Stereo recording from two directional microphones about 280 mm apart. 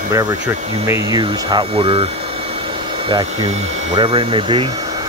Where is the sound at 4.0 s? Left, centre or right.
Centre.